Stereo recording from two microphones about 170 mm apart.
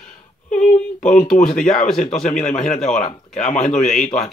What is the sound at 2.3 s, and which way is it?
Speech, 45° left (ahead or behind).